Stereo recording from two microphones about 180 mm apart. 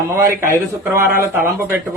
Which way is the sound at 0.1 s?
15° right (ahead or behind).